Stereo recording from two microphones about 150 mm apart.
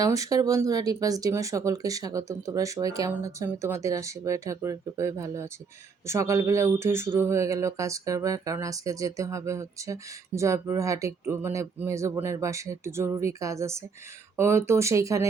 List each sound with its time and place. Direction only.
0.0 s speech: 20° right (ahead or behind)